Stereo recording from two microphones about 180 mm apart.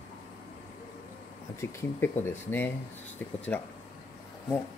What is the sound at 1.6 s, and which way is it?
Speech, 15° left (ahead or behind).